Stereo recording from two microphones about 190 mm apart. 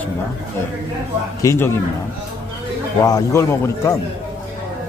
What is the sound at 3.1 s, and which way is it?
Speech, 15° left (ahead or behind).